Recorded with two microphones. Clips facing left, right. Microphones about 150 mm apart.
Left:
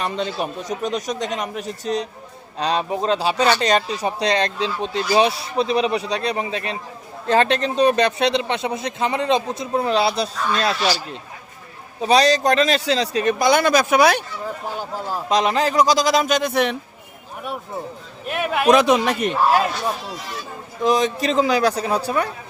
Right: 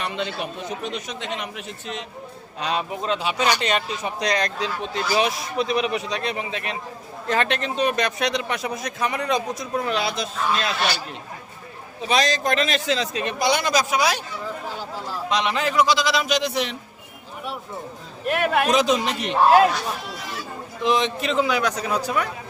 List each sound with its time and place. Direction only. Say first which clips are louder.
0.0 s a man's voice: left 4 dB; 40° left (ahead or behind)
10.8 s speech: left 3 dB; 60° right (ahead or behind)
12.0 s speech: left 6 dB; 35° left (ahead or behind); by 16.7 s 55° left (ahead or behind)
18.3 s speech: right 1 dB; centre (ahead or behind)
18.7 s speech: left 5 dB; 60° left (ahead or behind)
20.8 s a man's voice: left 3 dB; 40° left (ahead or behind)